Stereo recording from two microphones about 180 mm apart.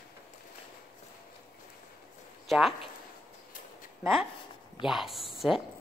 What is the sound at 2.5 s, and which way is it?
Speech, centre (ahead or behind).